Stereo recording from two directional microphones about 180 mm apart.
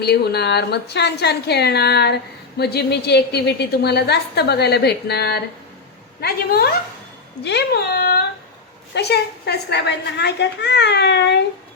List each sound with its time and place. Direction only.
0.0 s a woman's voice: 65° left (ahead or behind)